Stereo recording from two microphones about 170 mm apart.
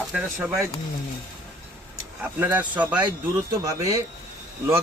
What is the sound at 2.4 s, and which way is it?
Speech, 10° right (ahead or behind).